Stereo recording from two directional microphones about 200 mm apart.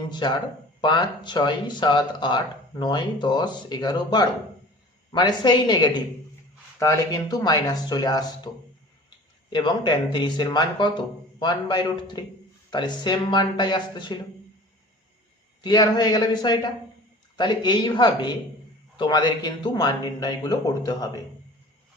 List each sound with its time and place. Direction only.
0.1 s speech: 20° left (ahead or behind)
9.5 s speech: 20° left (ahead or behind)
15.6 s speech: 20° left (ahead or behind)